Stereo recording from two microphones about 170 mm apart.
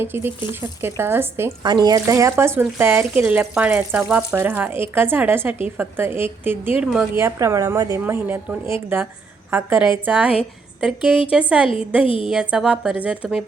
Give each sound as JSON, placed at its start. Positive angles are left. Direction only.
{"t": 0.0, "sound": "speech", "side_deg": -15}
{"t": 1.6, "sound": "speech", "side_deg": -25}
{"t": 7.2, "sound": "a woman's voice", "side_deg": -15}
{"t": 12.0, "sound": "speech", "side_deg": 30}
{"t": 12.3, "sound": "speech", "side_deg": -5}